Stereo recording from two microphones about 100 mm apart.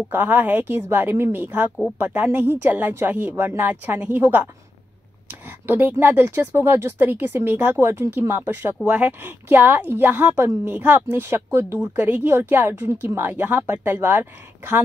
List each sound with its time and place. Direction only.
0.1 s speech: 20° right (ahead or behind)